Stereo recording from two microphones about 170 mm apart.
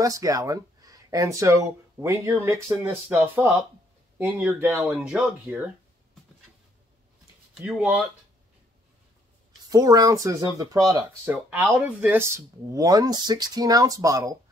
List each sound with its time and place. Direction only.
0.0 s speech: 20° right (ahead or behind); by 5.6 s 5° right (ahead or behind)
7.5 s speech: 5° right (ahead or behind)
9.7 s speech: 20° right (ahead or behind)
11.3 s speech: 5° right (ahead or behind)